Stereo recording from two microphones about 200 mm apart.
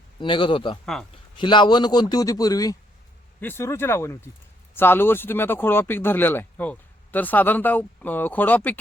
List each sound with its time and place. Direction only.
0.2 s a man's voice: 25° left (ahead or behind); by 8.8 s 10° left (ahead or behind)